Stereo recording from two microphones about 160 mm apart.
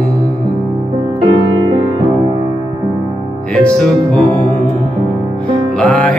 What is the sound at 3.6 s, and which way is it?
Music, 10° left (ahead or behind).